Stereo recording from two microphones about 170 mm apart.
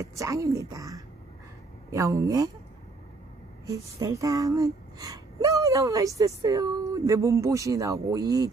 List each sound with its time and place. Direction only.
0.2 s speech: 20° right (ahead or behind)
3.6 s speech: 20° right (ahead or behind)